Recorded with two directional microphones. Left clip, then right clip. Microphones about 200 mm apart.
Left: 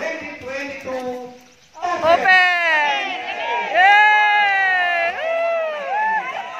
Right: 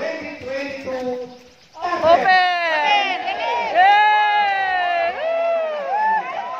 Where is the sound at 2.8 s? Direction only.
45° right (ahead or behind).